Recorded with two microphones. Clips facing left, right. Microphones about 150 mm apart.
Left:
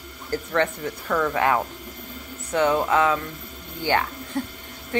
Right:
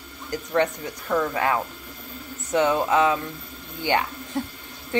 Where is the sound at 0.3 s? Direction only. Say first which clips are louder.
Even; 15° right (ahead or behind).